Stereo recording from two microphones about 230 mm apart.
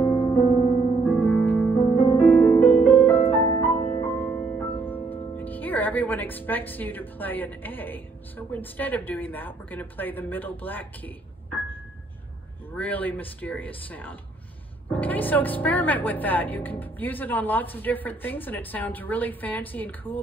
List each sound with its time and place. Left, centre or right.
0.0 s music: left
1.3 s music: centre
3.5 s music: left
5.3 s speech: centre
12.7 s speech: centre